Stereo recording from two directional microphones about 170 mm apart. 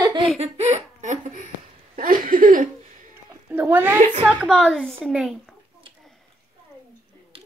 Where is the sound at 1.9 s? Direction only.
55° right (ahead or behind).